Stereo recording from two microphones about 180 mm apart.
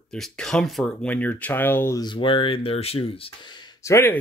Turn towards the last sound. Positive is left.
turn(degrees=15)  # may be behind; listen again after turning